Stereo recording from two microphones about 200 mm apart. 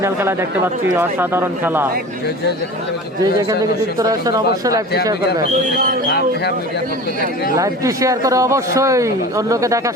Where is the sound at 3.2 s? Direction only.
15° right (ahead or behind).